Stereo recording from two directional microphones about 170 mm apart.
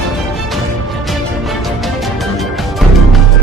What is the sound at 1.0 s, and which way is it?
Music, centre (ahead or behind).